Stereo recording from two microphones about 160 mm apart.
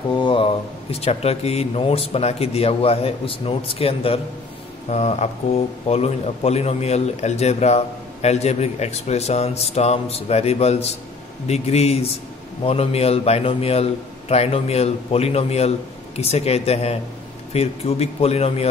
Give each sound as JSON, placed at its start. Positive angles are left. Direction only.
{"t": 0.1, "sound": "a man's voice", "side_deg": 30}